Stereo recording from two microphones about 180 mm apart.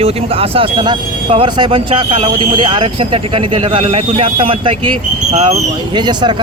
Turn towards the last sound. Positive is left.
turn(degrees=-25)  # may be behind; listen again after turning